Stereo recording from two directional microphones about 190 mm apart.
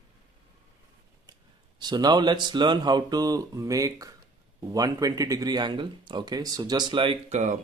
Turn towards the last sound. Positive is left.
turn(degrees=-40)  # may be behind; listen again after turning